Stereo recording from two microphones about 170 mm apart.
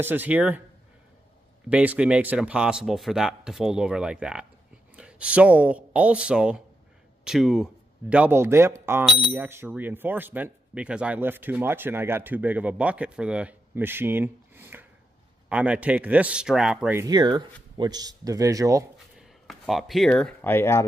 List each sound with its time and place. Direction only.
0.0 s speech: 10° right (ahead or behind)
1.7 s speech: 10° right (ahead or behind)
17.0 s speech: 25° right (ahead or behind)
19.1 s speech: centre (ahead or behind)